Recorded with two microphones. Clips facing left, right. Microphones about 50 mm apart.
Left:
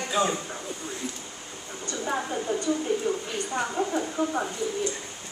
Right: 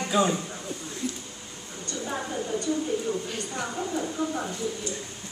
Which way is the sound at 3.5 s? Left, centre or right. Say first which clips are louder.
Left 4 dB; left.